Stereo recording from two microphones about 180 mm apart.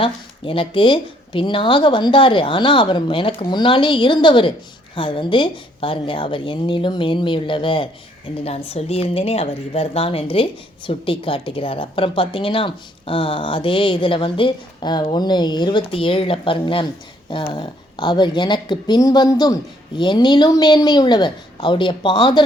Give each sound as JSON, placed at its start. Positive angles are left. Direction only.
{"t": 0.0, "sound": "a woman's voice", "side_deg": 30}